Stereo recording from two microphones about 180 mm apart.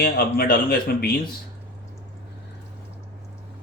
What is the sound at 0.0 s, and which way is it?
A man's voice, 55° left (ahead or behind).